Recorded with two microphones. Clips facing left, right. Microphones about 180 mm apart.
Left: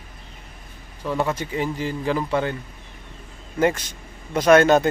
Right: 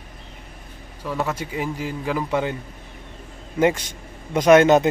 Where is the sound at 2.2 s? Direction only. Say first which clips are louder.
Even; 15° right (ahead or behind).